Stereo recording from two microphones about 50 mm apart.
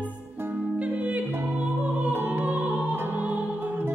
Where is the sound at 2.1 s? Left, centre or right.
Right.